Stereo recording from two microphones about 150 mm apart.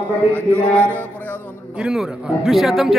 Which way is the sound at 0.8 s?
10° left (ahead or behind).